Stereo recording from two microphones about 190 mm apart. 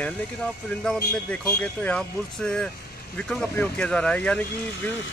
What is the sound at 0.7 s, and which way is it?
Speech, 5° left (ahead or behind).